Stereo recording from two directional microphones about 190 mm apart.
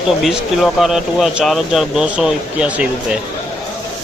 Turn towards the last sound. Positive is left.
turn(degrees=-5)  # may be behind; listen again after turning